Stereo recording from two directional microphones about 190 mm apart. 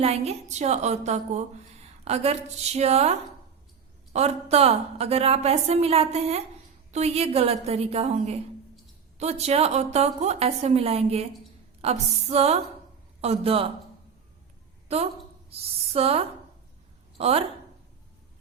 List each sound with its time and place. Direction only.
0.0 s a woman's voice: 35° right (ahead or behind)
14.9 s a woman's voice: 35° right (ahead or behind)